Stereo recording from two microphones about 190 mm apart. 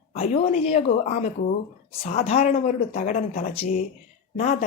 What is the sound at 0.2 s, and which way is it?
A woman's voice, 35° left (ahead or behind).